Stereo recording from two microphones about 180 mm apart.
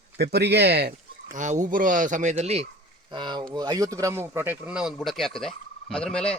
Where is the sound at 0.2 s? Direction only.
65° right (ahead or behind).